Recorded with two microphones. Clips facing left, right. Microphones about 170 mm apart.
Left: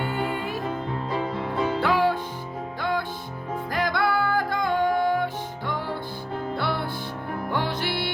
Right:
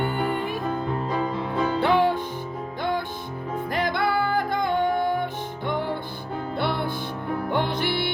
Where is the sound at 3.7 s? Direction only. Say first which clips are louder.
Even; 25° right (ahead or behind).